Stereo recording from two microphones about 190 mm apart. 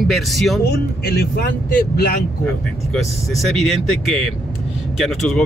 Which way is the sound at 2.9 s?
Centre (ahead or behind).